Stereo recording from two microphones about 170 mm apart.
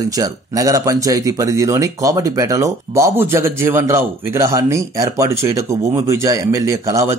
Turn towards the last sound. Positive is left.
turn(degrees=-15)  # may be behind; listen again after turning